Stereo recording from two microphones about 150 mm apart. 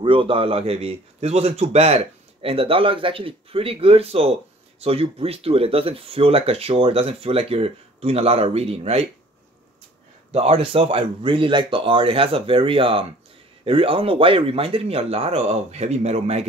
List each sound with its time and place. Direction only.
0.0 s a man's voice: 35° right (ahead or behind)
10.3 s a man's voice: 40° right (ahead or behind)